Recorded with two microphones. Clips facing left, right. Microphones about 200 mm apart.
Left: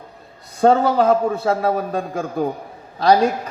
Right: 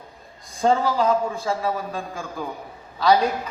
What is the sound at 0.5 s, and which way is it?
A man's voice, 65° left (ahead or behind).